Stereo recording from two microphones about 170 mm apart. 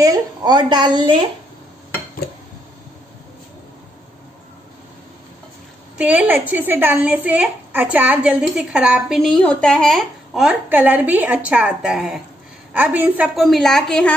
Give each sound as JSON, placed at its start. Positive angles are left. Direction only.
{"t": 0.0, "sound": "speech", "side_deg": -20}
{"t": 5.9, "sound": "a woman's voice", "side_deg": -10}